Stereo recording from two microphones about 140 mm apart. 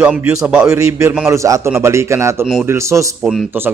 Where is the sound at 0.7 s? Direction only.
20° right (ahead or behind).